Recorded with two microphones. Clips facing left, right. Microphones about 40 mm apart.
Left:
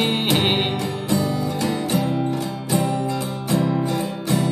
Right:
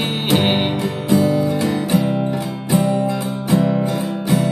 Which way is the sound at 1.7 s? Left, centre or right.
Centre.